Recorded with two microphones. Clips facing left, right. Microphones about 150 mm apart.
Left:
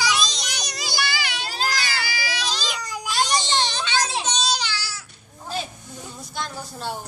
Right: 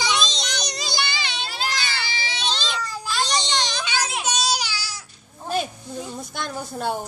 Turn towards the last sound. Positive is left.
turn(degrees=-55)  # may be behind; listen again after turning